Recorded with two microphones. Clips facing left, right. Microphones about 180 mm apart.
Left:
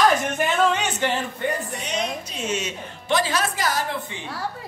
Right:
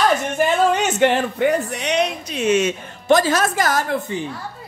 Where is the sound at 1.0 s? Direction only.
70° right (ahead or behind).